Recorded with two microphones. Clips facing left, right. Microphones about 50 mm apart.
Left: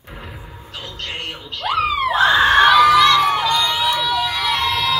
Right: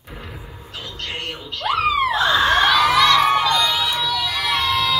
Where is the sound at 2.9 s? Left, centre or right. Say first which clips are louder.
Left 1 dB; centre.